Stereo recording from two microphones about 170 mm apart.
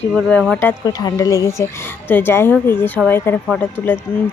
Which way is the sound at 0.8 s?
20° left (ahead or behind).